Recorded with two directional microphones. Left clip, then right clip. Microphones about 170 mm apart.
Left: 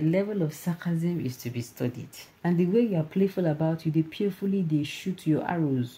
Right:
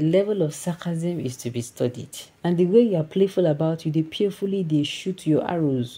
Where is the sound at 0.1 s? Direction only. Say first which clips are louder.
Right 7 dB; 25° right (ahead or behind).